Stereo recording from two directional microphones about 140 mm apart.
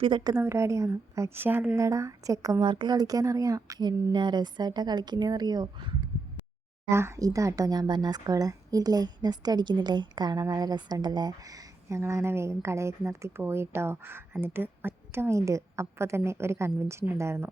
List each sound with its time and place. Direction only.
0.0 s a woman's voice: 35° right (ahead or behind)
0.3 s a woman's voice: 20° right (ahead or behind)
6.9 s speech: 20° right (ahead or behind)